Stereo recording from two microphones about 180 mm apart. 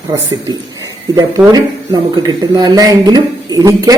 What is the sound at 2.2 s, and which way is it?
A woman's voice, 20° right (ahead or behind).